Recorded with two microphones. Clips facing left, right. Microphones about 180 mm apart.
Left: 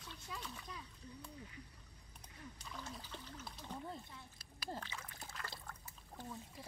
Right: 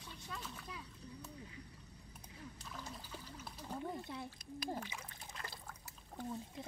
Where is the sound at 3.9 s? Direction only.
85° right.